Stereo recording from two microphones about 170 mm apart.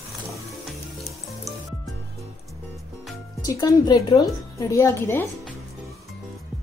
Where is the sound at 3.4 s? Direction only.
20° left (ahead or behind).